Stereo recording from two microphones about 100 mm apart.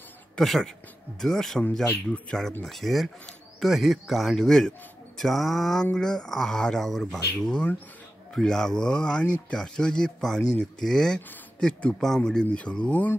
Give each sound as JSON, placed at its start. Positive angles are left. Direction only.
{"t": 0.4, "sound": "a man's voice", "side_deg": 5}